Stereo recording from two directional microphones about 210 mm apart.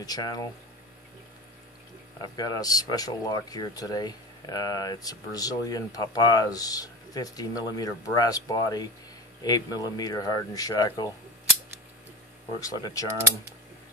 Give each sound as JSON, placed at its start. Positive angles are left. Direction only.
{"t": 0.0, "sound": "speech", "side_deg": 20}
{"t": 2.2, "sound": "speech", "side_deg": 20}
{"t": 12.5, "sound": "speech", "side_deg": 15}